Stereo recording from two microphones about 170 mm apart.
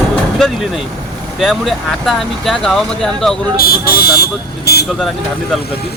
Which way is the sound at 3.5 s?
65° left (ahead or behind).